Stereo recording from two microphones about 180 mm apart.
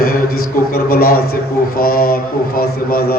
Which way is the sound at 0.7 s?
55° left (ahead or behind).